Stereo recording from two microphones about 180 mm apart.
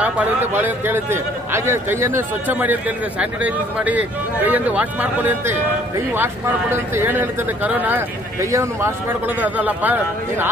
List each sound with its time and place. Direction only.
0.0 s a man's voice: 10° right (ahead or behind)